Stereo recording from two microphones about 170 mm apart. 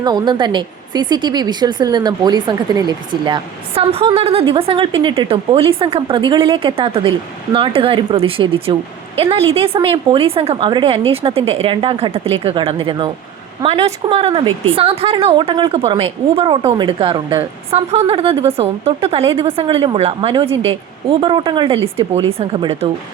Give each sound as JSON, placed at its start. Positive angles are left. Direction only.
{"t": 0.0, "sound": "a woman's voice", "side_deg": -25}